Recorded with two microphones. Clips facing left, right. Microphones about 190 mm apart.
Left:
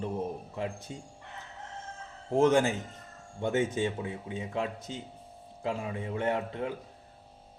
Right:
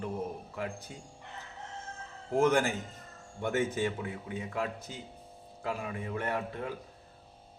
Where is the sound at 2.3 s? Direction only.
25° left (ahead or behind).